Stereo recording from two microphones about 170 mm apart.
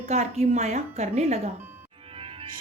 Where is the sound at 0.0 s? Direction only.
40° right (ahead or behind).